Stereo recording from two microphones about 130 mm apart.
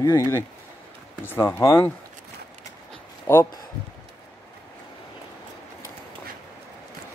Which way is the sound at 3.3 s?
20° left (ahead or behind).